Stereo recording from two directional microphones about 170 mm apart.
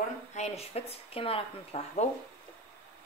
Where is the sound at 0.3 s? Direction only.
40° left (ahead or behind).